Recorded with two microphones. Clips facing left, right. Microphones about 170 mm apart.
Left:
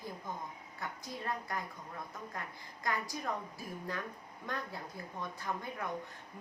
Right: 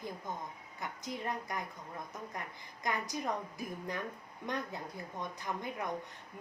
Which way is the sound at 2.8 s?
20° right (ahead or behind).